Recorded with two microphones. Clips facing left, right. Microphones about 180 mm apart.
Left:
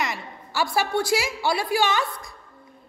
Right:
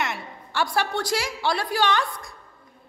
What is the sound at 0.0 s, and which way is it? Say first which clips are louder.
A woman's voice: even; 5° left (ahead or behind).